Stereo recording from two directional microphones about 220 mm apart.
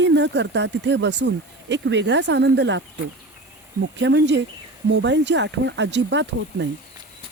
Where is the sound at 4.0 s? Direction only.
55° right (ahead or behind).